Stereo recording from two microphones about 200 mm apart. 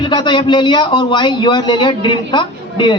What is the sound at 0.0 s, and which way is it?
A man's voice, 20° left (ahead or behind).